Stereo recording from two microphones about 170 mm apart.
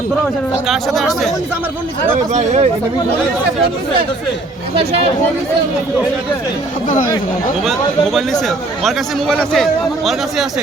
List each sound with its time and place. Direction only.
0.7 s speech: centre (ahead or behind)
2.3 s speech: 40° right (ahead or behind)
6.8 s speech: 55° left (ahead or behind)
7.6 s speech: centre (ahead or behind)